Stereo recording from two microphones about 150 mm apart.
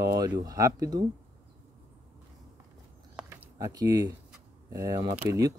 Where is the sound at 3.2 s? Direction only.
20° right (ahead or behind).